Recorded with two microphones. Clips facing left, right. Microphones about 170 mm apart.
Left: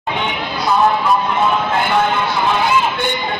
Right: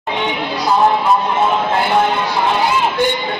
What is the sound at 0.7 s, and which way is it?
Music, 25° right (ahead or behind).